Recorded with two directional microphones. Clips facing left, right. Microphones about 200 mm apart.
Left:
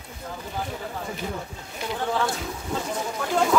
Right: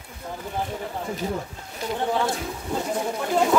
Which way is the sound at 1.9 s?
20° right (ahead or behind).